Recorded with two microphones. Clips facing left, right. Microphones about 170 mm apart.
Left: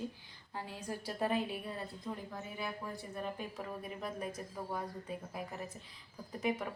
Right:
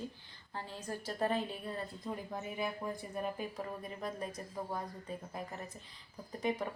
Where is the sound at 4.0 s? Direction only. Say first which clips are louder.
Right 1 dB; 5° left (ahead or behind).